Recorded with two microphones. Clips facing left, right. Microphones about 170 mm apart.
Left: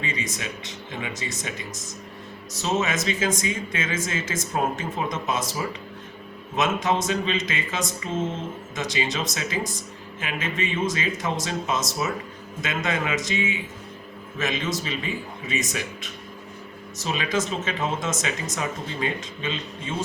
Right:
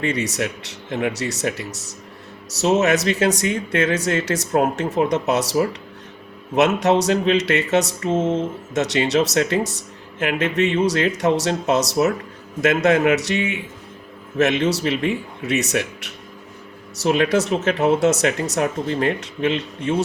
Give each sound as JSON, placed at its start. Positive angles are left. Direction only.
{"t": 0.0, "sound": "speech", "side_deg": -75}